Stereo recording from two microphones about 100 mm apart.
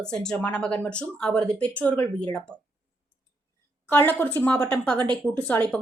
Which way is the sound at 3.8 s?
20° left (ahead or behind).